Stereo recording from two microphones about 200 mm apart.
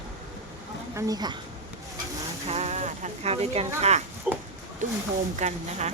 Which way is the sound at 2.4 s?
30° right (ahead or behind).